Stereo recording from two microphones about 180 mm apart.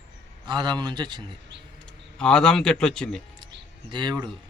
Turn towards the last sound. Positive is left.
turn(degrees=-25)  # may be behind; listen again after turning